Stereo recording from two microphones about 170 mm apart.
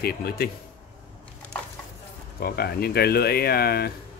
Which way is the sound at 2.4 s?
65° left (ahead or behind).